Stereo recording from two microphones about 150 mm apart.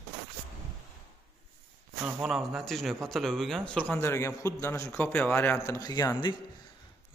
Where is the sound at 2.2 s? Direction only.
Centre (ahead or behind); by 6.3 s 25° left (ahead or behind).